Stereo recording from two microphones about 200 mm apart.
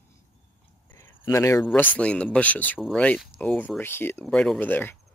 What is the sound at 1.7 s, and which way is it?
Speech, 5° left (ahead or behind).